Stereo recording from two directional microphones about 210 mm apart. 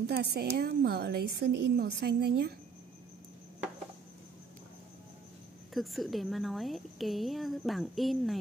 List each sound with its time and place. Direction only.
0.1 s a woman's voice: 50° right (ahead or behind)
5.7 s a woman's voice: centre (ahead or behind)